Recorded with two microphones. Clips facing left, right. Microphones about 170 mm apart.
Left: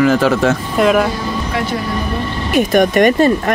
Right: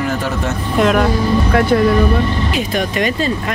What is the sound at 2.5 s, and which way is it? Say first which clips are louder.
Speech: left 6 dB; 55° left (ahead or behind).